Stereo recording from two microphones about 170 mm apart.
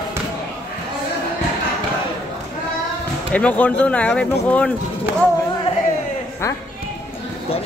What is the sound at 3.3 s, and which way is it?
Speech, 5° left (ahead or behind).